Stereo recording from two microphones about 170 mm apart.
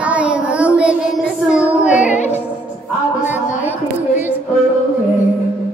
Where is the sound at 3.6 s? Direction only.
10° right (ahead or behind).